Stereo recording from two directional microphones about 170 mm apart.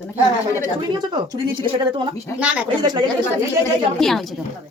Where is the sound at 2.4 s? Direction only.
5° right (ahead or behind).